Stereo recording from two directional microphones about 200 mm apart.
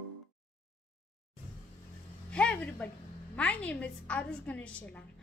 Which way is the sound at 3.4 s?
5° left (ahead or behind).